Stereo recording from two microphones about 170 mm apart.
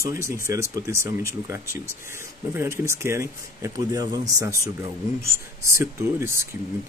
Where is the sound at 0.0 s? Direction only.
15° right (ahead or behind).